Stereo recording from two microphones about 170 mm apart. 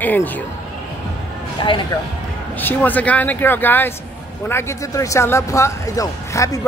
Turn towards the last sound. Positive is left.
turn(degrees=20)  # may be behind; listen again after turning